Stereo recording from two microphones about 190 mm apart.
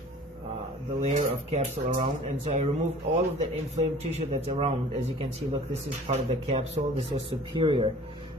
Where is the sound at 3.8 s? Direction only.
35° right (ahead or behind).